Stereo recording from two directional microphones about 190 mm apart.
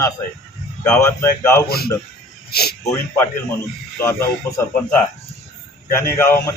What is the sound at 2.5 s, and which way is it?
Speech, 55° left (ahead or behind).